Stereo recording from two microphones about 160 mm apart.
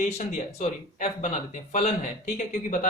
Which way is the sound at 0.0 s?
45° left (ahead or behind).